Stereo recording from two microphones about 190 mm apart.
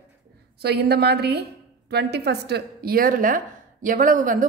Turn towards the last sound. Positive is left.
turn(degrees=-45)  # may be behind; listen again after turning